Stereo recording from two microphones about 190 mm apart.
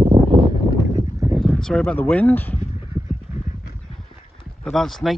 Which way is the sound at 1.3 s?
Centre (ahead or behind).